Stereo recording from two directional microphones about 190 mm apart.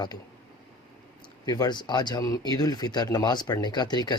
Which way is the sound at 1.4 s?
20° left (ahead or behind).